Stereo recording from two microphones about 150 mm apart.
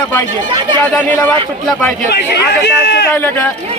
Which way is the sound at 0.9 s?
10° left (ahead or behind).